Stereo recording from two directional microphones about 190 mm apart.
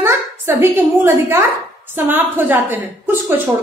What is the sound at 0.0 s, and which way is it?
A woman's voice, 10° right (ahead or behind).